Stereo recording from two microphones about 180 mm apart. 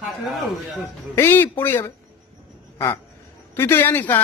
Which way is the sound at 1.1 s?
10° left (ahead or behind).